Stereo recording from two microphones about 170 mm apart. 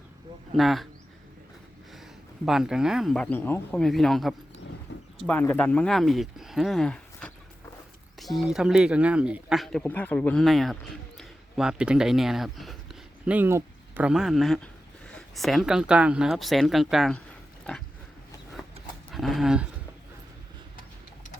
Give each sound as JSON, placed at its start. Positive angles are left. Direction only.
{"t": 0.5, "sound": "speech", "side_deg": 0}
{"t": 2.4, "sound": "speech", "side_deg": -5}
{"t": 4.9, "sound": "a sound", "side_deg": 90}
{"t": 5.2, "sound": "speech", "side_deg": 10}
{"t": 8.4, "sound": "speech", "side_deg": 0}
{"t": 19.1, "sound": "speech", "side_deg": 0}